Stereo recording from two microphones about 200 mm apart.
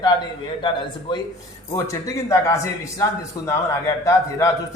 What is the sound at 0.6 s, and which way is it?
A man's voice, 25° left (ahead or behind).